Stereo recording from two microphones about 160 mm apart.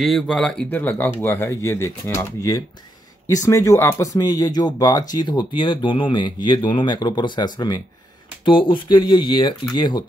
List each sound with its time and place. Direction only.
0.0 s speech: centre (ahead or behind); by 10.0 s 25° left (ahead or behind)